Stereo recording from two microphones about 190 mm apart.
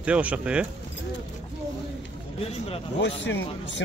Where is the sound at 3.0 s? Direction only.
70° left (ahead or behind).